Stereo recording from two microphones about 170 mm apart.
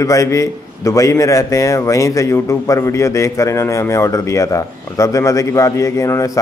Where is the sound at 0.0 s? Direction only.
20° left (ahead or behind).